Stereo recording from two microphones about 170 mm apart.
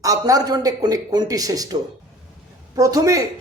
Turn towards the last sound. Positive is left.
turn(degrees=-20)  # may be behind; listen again after turning